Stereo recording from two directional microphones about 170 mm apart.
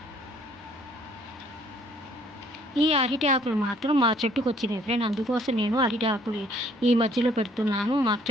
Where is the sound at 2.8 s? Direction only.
35° right (ahead or behind).